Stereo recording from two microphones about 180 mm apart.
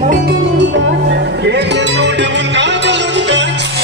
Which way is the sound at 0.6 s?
75° right (ahead or behind).